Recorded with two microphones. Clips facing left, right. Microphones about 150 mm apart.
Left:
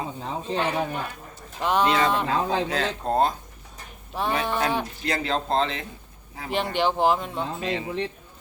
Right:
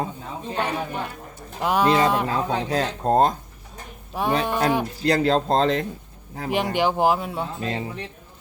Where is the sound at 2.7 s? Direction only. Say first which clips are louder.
Right 4 dB; 40° right (ahead or behind).